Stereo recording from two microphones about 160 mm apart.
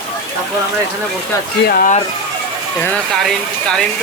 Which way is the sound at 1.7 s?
65° left (ahead or behind).